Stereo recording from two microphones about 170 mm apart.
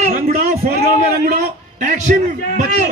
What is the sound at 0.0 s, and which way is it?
A man's voice, 45° right (ahead or behind).